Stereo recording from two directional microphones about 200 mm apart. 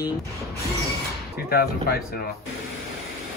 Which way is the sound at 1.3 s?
50° left (ahead or behind).